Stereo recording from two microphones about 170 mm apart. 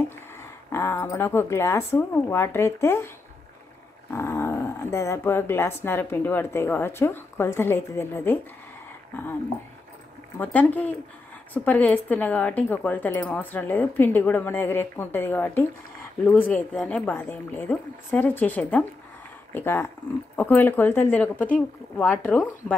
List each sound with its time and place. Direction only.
0.7 s speech: 15° left (ahead or behind)
4.1 s speech: 15° left (ahead or behind)
10.3 s speech: 10° left (ahead or behind)